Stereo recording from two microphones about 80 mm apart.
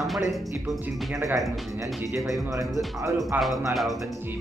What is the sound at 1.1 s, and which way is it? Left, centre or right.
Speech, right.